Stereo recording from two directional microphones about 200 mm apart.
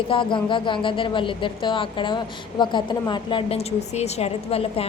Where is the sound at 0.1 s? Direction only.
25° left (ahead or behind).